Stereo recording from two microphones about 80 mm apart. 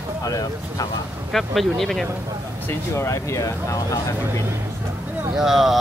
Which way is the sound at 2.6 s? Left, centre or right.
Left.